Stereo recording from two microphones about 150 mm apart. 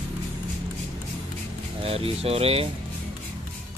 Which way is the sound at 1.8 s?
40° right (ahead or behind).